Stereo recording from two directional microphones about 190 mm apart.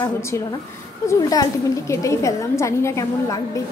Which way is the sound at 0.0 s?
20° left (ahead or behind).